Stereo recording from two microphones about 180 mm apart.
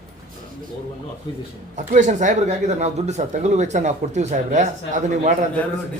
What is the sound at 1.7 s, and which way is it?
Speech, 45° right (ahead or behind).